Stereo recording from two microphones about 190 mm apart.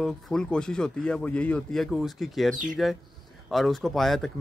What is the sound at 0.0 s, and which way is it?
A man's voice, 5° left (ahead or behind).